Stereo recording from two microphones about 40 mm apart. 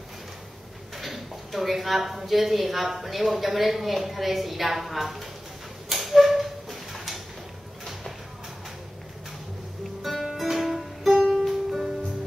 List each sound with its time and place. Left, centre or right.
0.9 s speech: centre
5.9 s tick-tock: centre
10.2 s music: centre